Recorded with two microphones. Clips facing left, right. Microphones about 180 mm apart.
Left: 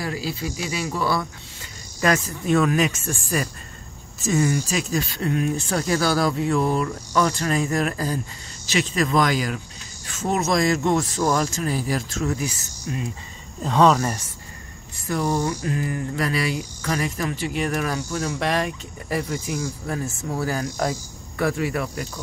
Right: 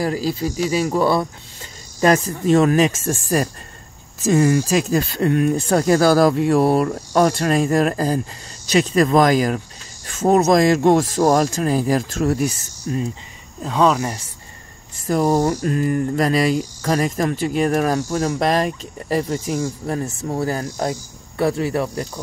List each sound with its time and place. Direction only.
0.0 s mantra: 40° right (ahead or behind)
2.0 s speech: 35° right (ahead or behind)
6.7 s speech: 55° right (ahead or behind)
12.9 s mantra: 40° right (ahead or behind)
13.6 s speech: centre (ahead or behind)
15.0 s mantra: 40° right (ahead or behind)
20.2 s speech: 30° right (ahead or behind)
21.4 s mantra: 30° right (ahead or behind)